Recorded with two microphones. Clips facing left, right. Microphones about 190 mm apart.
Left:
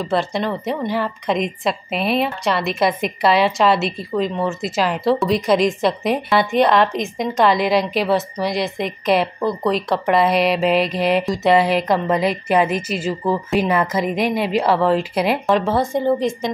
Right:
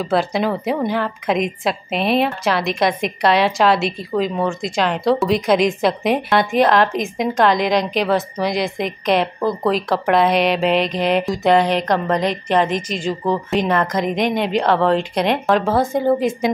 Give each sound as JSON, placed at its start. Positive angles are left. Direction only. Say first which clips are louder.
{"t": 0.1, "sound": "a woman's voice", "louder": "right 3 dB", "side_deg": 0}